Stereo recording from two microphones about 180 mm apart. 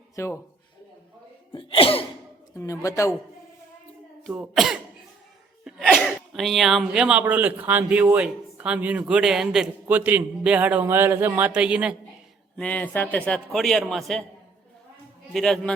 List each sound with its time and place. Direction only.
0.2 s speech: 15° left (ahead or behind)
1.5 s cough: 30° left (ahead or behind)
2.6 s speech: 15° left (ahead or behind)
4.2 s a man's voice: centre (ahead or behind)
12.5 s speech: 10° left (ahead or behind)
15.3 s speech: centre (ahead or behind)